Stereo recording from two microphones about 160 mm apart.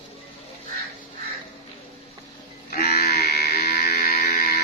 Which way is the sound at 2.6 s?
75° left (ahead or behind).